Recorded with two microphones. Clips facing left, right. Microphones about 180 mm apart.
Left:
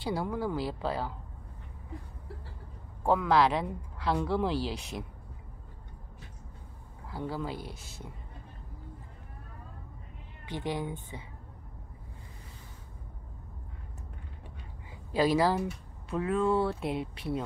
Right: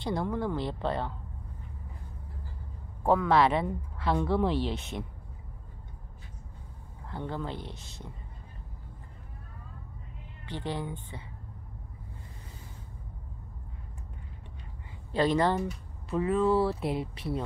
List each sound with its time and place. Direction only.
0.0 s speech: 5° left (ahead or behind)
3.0 s speech: centre (ahead or behind)
7.1 s speech: 5° left (ahead or behind)
10.4 s speech: 15° left (ahead or behind)
15.1 s speech: 5° left (ahead or behind)